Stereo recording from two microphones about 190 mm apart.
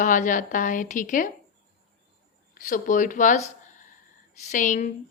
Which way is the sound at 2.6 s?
45° left (ahead or behind).